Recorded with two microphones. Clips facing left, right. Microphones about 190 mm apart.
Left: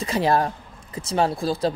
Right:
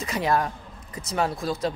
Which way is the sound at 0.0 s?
30° left (ahead or behind).